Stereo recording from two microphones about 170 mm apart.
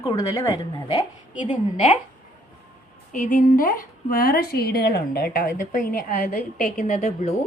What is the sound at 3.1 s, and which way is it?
A woman's voice, 50° left (ahead or behind).